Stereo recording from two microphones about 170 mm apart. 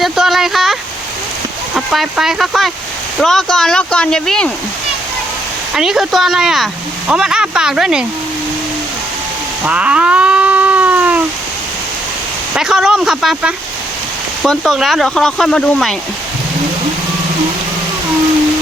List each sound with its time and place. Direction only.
0.0 s a sound: centre (ahead or behind)
1.7 s speech: centre (ahead or behind)
5.7 s speech: 5° right (ahead or behind)
9.6 s cat: 5° right (ahead or behind)
12.5 s speech: 5° right (ahead or behind)